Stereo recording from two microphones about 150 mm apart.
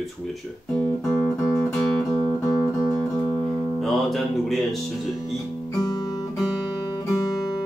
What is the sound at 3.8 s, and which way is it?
Speech, centre (ahead or behind).